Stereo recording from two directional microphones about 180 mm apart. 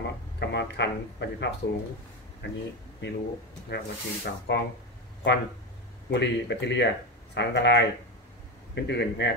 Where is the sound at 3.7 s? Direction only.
65° left (ahead or behind).